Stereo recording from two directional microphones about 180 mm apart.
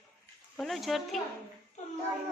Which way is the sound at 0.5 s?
Centre (ahead or behind).